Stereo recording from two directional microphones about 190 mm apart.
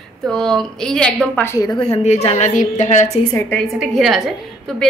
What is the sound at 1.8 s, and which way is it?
A woman's voice, 35° left (ahead or behind).